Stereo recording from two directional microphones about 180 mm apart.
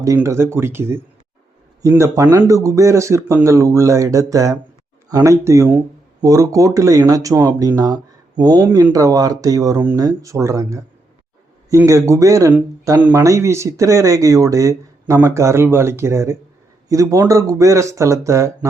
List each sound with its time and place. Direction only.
0.0 s speech: 15° right (ahead or behind)